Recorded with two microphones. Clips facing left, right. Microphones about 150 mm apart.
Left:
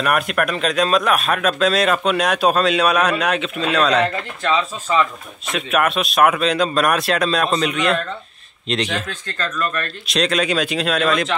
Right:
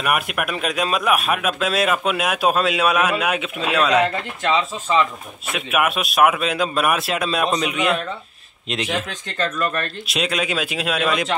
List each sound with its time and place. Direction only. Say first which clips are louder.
0.0 s a man's voice: left 3 dB; 10° right (ahead or behind)
5.5 s a man's voice: left 2 dB; 10° right (ahead or behind)
10.0 s a man's voice: left 6 dB; 5° right (ahead or behind)